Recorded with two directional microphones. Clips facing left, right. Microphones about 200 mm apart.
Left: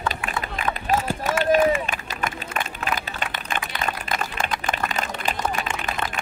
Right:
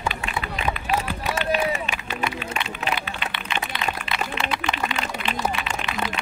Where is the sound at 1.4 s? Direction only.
45° left (ahead or behind).